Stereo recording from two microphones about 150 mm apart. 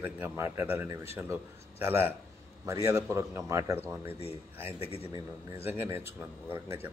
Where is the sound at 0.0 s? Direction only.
15° right (ahead or behind).